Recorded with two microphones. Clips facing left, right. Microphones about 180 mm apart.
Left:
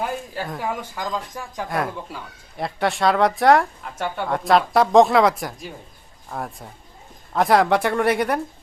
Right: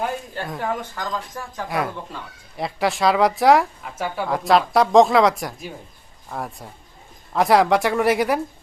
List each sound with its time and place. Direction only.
0.0 s speech: centre (ahead or behind)
1.6 s speech: centre (ahead or behind)